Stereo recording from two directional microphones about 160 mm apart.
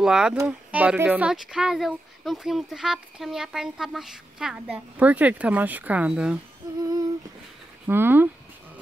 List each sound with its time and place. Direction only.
0.0 s speech: 5° right (ahead or behind)
6.6 s humming: 25° right (ahead or behind)
7.8 s speech: 15° right (ahead or behind)